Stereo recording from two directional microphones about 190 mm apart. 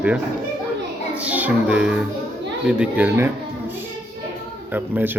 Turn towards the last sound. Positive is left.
turn(degrees=-10)  # may be behind; listen again after turning